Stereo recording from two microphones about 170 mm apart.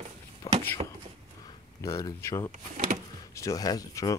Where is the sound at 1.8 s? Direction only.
20° left (ahead or behind).